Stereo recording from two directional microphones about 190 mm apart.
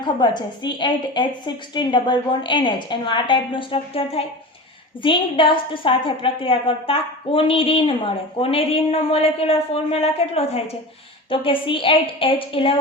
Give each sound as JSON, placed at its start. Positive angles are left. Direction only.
{"t": 0.0, "sound": "a woman's voice", "side_deg": 25}